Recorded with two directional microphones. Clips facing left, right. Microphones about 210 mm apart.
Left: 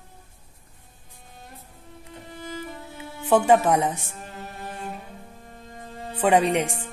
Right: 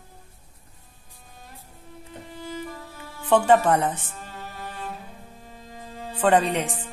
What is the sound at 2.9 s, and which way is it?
Speech, 5° left (ahead or behind).